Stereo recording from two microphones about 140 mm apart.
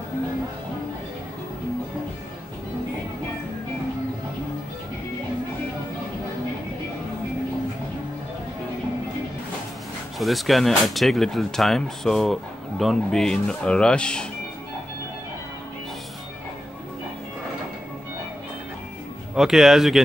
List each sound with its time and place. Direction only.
10.1 s speech: centre (ahead or behind)
19.3 s speech: centre (ahead or behind)